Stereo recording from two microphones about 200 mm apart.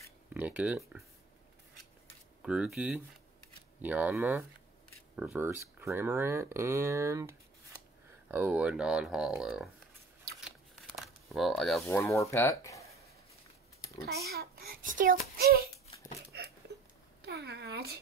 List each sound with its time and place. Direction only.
0.3 s speech: 5° right (ahead or behind)
2.4 s speech: 5° right (ahead or behind)
10.4 s a sound: centre (ahead or behind)
11.9 s speech: 15° left (ahead or behind)
14.0 s a child's voice: 50° right (ahead or behind)
16.3 s a sound: 55° right (ahead or behind)